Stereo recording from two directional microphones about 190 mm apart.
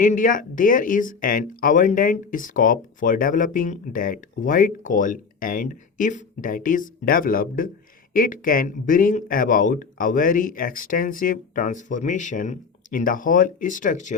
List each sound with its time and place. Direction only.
0.0 s speech: 45° left (ahead or behind)